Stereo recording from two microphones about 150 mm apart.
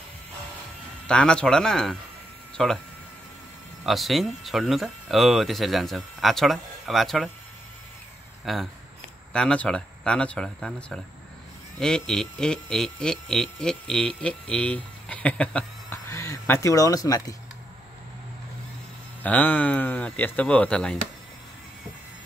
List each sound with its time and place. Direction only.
1.0 s speech: 5° left (ahead or behind)
3.8 s speech: centre (ahead or behind)
8.5 s speech: centre (ahead or behind)
16.1 s speech: 20° left (ahead or behind)
19.2 s speech: 10° left (ahead or behind)